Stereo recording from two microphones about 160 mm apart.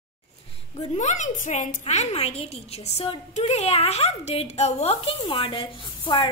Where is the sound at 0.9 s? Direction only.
50° left (ahead or behind).